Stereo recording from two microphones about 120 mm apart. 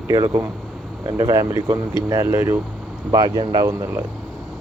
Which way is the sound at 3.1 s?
30° right (ahead or behind).